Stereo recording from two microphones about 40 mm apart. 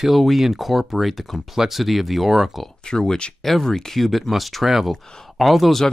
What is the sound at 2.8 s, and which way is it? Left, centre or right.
Speech, centre.